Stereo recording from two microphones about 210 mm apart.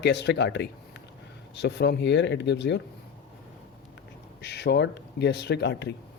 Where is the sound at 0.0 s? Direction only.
55° left (ahead or behind).